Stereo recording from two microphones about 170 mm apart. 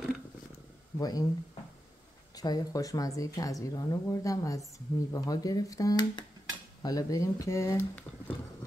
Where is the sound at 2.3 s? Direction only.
20° left (ahead or behind).